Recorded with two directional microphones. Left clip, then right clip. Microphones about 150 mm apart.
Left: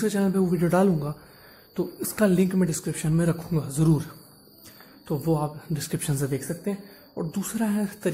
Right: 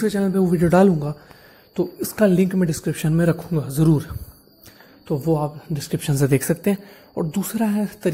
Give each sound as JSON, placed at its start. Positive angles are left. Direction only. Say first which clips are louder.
{"t": 0.0, "sound": "a woman's voice", "louder": "right 4 dB", "side_deg": -20}
{"t": 6.1, "sound": "speech", "louder": "right 13 dB", "side_deg": -45}
{"t": 7.2, "sound": "a woman's voice", "louder": "right 6 dB", "side_deg": -25}